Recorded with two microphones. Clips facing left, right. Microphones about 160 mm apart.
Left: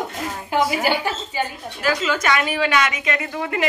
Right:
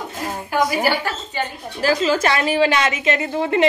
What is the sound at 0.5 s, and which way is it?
Speech, 20° left (ahead or behind).